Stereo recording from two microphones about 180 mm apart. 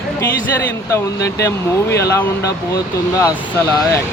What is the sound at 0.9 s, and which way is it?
Speech, 15° left (ahead or behind).